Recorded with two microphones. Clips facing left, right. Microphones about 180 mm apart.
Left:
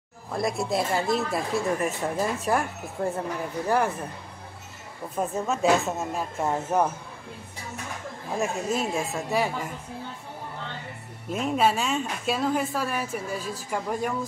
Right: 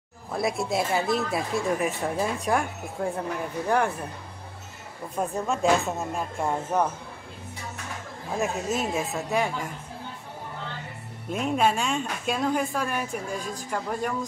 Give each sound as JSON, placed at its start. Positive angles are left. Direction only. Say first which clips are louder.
{"t": 0.3, "sound": "speech", "louder": "even", "side_deg": 0}
{"t": 5.1, "sound": "speech", "louder": "even", "side_deg": 0}
{"t": 8.4, "sound": "speech", "louder": "even", "side_deg": 0}
{"t": 11.2, "sound": "speech", "louder": "even", "side_deg": 0}